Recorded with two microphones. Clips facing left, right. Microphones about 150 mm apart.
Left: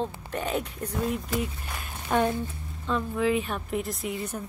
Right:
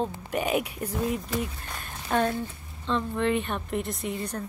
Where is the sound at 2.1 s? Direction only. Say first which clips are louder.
Left 1 dB; 15° left (ahead or behind).